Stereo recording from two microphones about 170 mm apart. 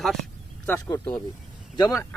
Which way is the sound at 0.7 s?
20° left (ahead or behind).